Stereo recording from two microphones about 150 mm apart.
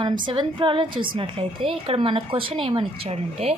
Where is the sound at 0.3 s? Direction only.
35° right (ahead or behind).